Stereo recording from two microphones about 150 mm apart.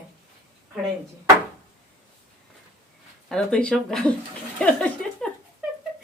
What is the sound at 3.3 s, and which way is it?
Speech, 5° left (ahead or behind).